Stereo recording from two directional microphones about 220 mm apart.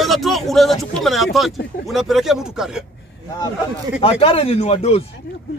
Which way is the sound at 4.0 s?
25° left (ahead or behind).